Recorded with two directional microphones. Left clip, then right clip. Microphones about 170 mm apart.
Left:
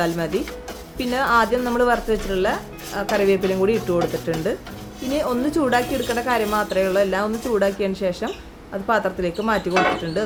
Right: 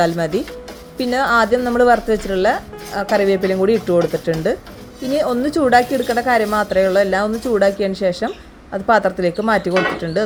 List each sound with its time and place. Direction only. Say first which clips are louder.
0.0 s a woman's voice: right 5 dB; 25° right (ahead or behind)